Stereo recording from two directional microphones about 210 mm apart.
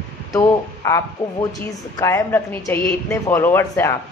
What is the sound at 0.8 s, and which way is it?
Speech, 15° left (ahead or behind).